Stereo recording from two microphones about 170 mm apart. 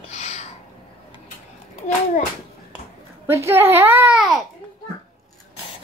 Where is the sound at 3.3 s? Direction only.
15° right (ahead or behind).